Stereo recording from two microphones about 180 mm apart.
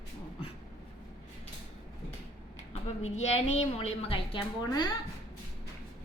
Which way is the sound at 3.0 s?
40° left (ahead or behind).